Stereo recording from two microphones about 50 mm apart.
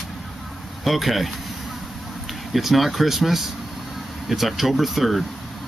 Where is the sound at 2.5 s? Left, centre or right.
Centre.